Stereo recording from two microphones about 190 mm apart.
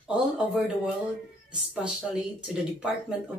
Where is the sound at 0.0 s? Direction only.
5° right (ahead or behind).